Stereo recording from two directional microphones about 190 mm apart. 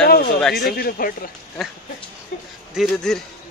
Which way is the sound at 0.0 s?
55° left (ahead or behind).